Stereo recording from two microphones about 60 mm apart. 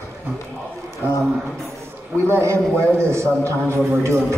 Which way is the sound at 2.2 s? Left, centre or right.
Right.